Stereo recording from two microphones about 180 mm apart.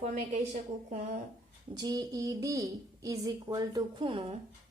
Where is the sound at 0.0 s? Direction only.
40° right (ahead or behind).